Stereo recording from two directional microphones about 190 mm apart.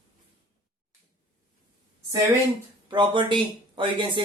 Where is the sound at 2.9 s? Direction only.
25° right (ahead or behind).